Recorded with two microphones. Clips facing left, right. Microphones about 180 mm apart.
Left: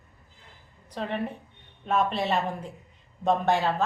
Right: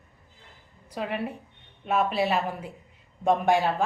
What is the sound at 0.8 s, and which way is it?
A woman's voice, 10° right (ahead or behind).